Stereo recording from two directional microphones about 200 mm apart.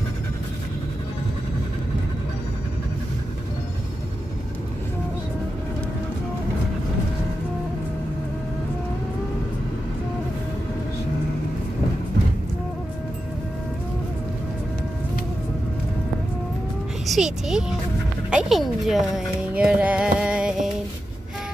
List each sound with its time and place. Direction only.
17.0 s speech: centre (ahead or behind)